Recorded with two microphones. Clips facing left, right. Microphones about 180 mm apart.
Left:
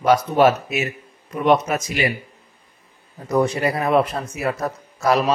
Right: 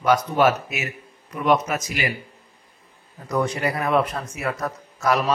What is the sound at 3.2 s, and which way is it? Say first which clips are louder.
Speech: left 4 dB; 25° left (ahead or behind).